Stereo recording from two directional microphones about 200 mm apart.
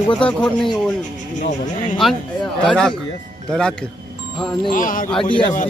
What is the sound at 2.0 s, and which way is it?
Speech, centre (ahead or behind).